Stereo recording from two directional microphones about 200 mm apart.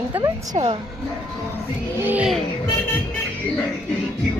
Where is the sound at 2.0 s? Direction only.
10° right (ahead or behind).